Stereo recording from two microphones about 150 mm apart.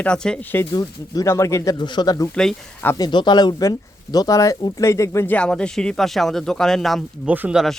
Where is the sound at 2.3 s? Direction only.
5° left (ahead or behind).